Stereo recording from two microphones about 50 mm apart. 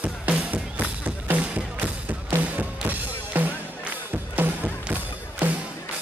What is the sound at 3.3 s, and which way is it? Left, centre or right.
Music, right.